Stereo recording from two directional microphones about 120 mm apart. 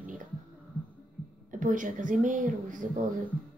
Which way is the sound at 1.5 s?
90° right.